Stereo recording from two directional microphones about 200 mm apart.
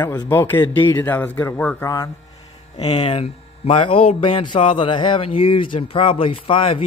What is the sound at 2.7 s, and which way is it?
Speech, 35° left (ahead or behind).